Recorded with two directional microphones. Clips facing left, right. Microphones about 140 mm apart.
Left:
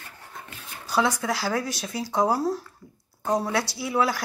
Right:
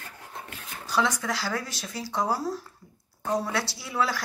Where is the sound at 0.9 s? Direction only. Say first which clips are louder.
Left 3 dB; 10° left (ahead or behind).